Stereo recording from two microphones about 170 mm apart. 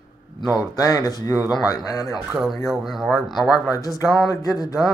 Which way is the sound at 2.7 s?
Centre (ahead or behind).